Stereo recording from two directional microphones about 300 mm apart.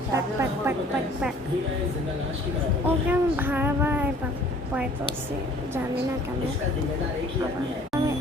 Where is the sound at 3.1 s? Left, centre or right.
Centre.